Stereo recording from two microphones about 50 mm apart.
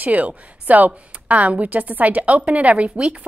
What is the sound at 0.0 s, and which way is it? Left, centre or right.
A woman's voice, right.